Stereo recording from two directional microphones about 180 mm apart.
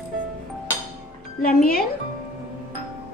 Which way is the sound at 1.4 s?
55° left (ahead or behind).